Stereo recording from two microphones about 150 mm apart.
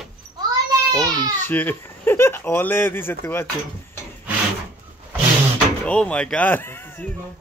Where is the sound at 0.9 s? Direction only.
25° right (ahead or behind).